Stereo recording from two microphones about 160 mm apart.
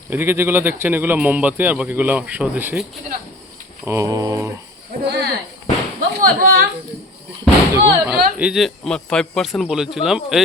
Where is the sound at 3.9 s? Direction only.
20° right (ahead or behind).